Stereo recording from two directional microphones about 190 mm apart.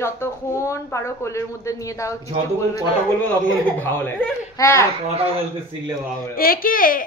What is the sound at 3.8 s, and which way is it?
A woman's voice, 10° left (ahead or behind).